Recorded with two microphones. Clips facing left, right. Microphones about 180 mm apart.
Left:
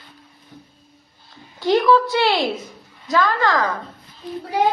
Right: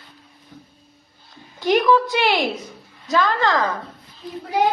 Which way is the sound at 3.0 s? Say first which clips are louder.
Even; 20° right (ahead or behind).